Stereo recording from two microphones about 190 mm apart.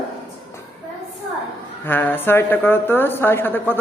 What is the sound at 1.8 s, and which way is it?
A woman's voice, 10° left (ahead or behind).